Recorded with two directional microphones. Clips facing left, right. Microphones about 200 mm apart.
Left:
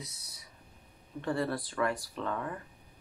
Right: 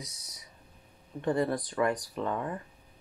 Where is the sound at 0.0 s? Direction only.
20° right (ahead or behind).